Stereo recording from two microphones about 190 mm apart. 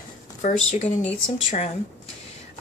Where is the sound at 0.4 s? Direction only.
40° left (ahead or behind).